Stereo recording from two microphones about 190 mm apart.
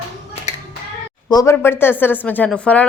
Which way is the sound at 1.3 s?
20° left (ahead or behind).